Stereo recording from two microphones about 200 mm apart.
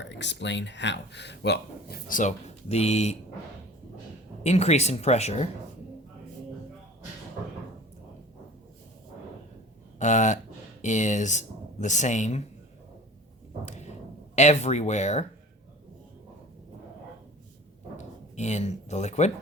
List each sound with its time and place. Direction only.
0.0 s speech: 60° left (ahead or behind); by 3.2 s 30° left (ahead or behind)
4.4 s speech: 35° left (ahead or behind)
10.0 s speech: 35° left (ahead or behind)
13.7 s a sound: 35° left (ahead or behind)
14.3 s speech: 35° left (ahead or behind)
17.9 s speech: 35° left (ahead or behind)